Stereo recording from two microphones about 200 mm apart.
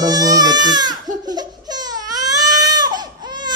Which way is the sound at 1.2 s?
20° right (ahead or behind).